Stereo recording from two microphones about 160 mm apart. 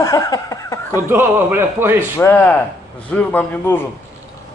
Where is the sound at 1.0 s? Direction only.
15° right (ahead or behind).